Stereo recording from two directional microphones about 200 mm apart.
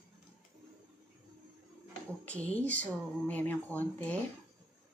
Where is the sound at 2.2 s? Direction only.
5° left (ahead or behind).